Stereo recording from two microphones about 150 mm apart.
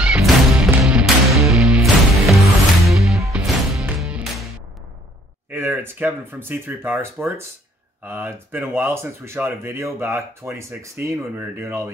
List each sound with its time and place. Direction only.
0.1 s music: 5° right (ahead or behind)
5.5 s speech: 15° right (ahead or behind)